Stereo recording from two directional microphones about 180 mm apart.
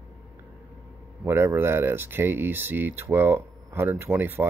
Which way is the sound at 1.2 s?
15° right (ahead or behind).